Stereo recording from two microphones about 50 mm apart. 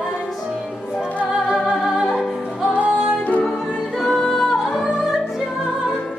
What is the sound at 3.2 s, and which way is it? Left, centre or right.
Music, left.